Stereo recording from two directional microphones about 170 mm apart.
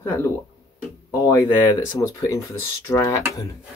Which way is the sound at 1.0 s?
20° left (ahead or behind).